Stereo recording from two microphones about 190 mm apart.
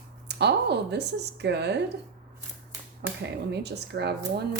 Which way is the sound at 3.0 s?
65° right (ahead or behind).